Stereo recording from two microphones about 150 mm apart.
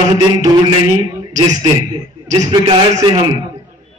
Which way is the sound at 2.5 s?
30° right (ahead or behind).